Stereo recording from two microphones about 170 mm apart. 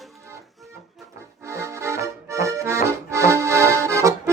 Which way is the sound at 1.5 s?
15° right (ahead or behind).